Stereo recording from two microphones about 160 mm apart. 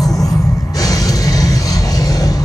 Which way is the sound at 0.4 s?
20° left (ahead or behind).